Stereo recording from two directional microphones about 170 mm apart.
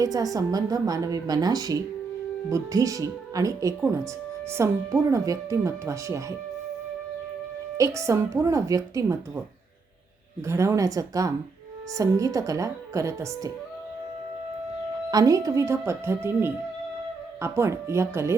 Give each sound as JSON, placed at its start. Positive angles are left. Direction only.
{"t": 0.0, "sound": "speech", "side_deg": -20}
{"t": 7.8, "sound": "speech", "side_deg": -15}
{"t": 10.4, "sound": "speech", "side_deg": -15}
{"t": 15.1, "sound": "speech", "side_deg": -20}